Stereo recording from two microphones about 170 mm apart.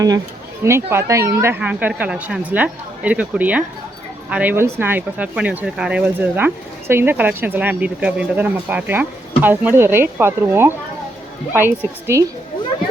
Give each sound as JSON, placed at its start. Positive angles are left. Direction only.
{"t": 0.6, "sound": "speech", "side_deg": -15}